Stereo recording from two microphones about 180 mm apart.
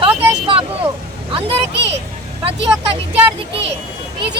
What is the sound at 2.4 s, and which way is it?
Speech, 30° right (ahead or behind).